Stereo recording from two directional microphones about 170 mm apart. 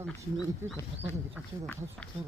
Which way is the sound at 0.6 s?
15° right (ahead or behind).